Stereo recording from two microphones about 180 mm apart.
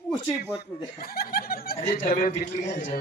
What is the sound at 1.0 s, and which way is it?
Snicker, 55° left (ahead or behind).